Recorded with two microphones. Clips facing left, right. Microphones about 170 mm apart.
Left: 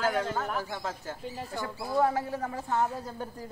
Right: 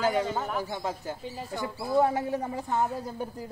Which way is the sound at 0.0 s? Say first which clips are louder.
Right 2 dB; 5° right (ahead or behind).